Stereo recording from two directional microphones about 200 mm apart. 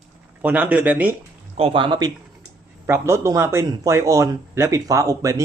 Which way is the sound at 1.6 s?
25° right (ahead or behind).